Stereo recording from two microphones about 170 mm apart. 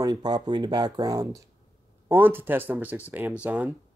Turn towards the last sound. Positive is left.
turn(degrees=-10)  # may be behind; listen again after turning